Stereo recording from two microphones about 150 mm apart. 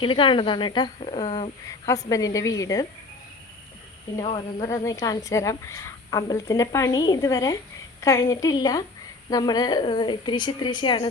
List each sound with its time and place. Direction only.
0.0 s a woman's voice: 35° left (ahead or behind)
1.9 s speech: 20° left (ahead or behind)
4.6 s a woman's voice: 20° left (ahead or behind)